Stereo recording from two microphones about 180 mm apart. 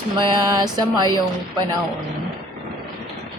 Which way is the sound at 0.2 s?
25° right (ahead or behind).